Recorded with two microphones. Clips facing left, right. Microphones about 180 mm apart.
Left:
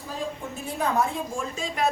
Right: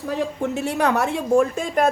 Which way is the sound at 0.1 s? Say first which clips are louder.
Right 8 dB; 70° right (ahead or behind).